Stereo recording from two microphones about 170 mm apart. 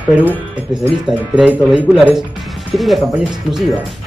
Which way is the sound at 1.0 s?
5° right (ahead or behind).